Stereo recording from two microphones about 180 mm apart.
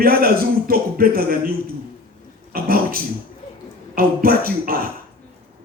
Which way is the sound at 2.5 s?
55° right (ahead or behind).